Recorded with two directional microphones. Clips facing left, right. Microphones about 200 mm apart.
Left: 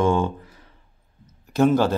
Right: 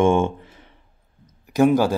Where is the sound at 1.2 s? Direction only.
10° right (ahead or behind).